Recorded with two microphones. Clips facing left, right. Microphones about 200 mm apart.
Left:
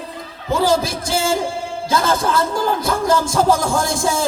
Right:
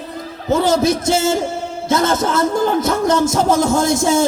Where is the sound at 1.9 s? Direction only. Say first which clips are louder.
Right 2 dB; 25° right (ahead or behind).